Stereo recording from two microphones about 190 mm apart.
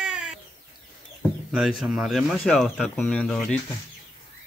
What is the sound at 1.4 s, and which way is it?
A man's voice, centre (ahead or behind).